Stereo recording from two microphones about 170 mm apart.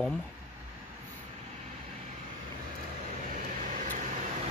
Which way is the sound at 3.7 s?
50° right (ahead or behind).